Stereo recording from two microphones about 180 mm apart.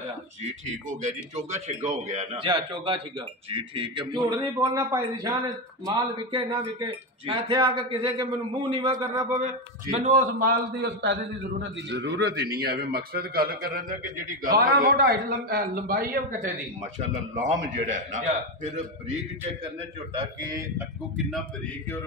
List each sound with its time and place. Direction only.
0.4 s a man's voice: 40° right (ahead or behind)
2.4 s a man's voice: 30° right (ahead or behind)
4.6 s a man's voice: 15° right (ahead or behind)
9.4 s a man's voice: 40° right (ahead or behind)
10.8 s a man's voice: 70° right (ahead or behind); by 16.5 s 55° right (ahead or behind)
16.8 s a man's voice: 45° right (ahead or behind)
20.2 s a man's voice: 20° right (ahead or behind)